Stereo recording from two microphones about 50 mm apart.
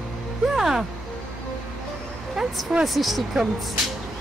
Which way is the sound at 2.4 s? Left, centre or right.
Centre.